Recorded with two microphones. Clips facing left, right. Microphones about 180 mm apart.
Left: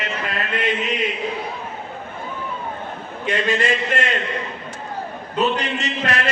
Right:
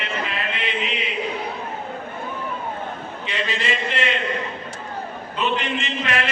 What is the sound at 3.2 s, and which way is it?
Speech, 50° left (ahead or behind).